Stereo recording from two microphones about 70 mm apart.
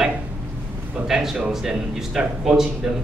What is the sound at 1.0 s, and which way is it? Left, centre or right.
A man's voice, centre.